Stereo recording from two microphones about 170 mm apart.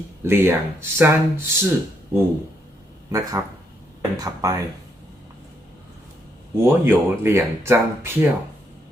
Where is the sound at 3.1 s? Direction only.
20° right (ahead or behind).